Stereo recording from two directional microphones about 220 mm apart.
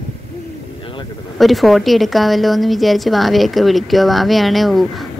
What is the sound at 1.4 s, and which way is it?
A woman's voice, centre (ahead or behind).